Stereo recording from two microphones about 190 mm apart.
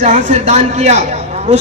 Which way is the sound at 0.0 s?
40° right (ahead or behind).